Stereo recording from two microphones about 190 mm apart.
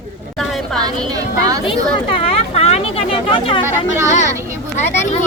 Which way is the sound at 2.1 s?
30° left (ahead or behind).